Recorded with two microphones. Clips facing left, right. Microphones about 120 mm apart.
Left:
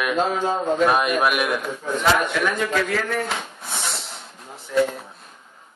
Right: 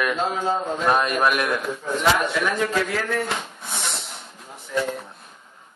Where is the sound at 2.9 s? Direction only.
Centre (ahead or behind).